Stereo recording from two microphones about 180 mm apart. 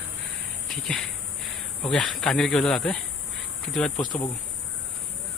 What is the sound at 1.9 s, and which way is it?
Speech, 5° left (ahead or behind).